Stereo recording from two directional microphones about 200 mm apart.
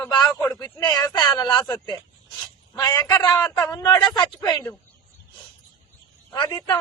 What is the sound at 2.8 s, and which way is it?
Speech, 15° left (ahead or behind).